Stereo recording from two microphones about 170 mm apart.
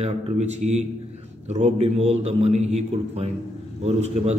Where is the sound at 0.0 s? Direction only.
40° right (ahead or behind).